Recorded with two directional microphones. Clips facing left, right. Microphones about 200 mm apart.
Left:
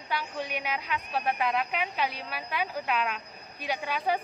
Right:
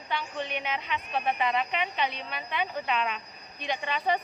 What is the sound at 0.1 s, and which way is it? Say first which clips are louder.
A woman's voice: even; 10° left (ahead or behind).